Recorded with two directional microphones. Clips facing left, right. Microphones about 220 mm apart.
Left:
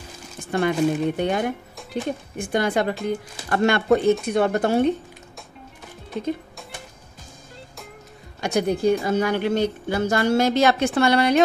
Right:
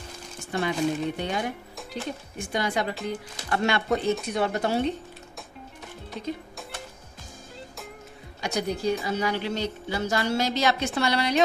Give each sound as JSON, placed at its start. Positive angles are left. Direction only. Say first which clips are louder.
{"t": 0.5, "sound": "speech", "louder": "left 5 dB", "side_deg": 55}
{"t": 6.2, "sound": "speech", "louder": "left 7 dB", "side_deg": 50}
{"t": 8.4, "sound": "speech", "louder": "left 7 dB", "side_deg": 50}